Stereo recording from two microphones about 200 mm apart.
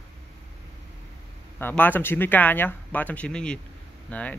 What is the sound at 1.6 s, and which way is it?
Speech, 10° left (ahead or behind).